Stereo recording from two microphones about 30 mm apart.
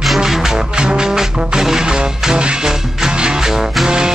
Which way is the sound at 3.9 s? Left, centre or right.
Right.